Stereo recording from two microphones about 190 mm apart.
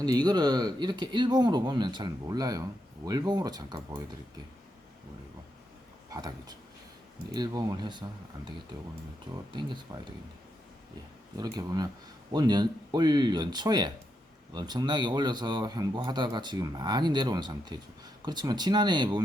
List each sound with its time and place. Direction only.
0.0 s speech: 20° right (ahead or behind)
6.1 s speech: 20° right (ahead or behind)
11.3 s speech: 20° right (ahead or behind)